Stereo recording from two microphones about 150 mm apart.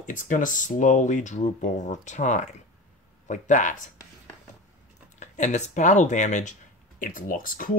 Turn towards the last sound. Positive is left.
turn(degrees=65)  # may be behind; listen again after turning